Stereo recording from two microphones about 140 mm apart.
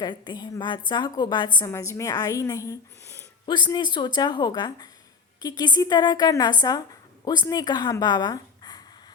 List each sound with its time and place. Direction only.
0.0 s a woman's voice: 30° left (ahead or behind)
3.4 s a woman's voice: 30° left (ahead or behind)